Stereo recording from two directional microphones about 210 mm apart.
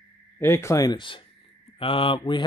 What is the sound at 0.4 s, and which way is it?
Speech, 15° left (ahead or behind).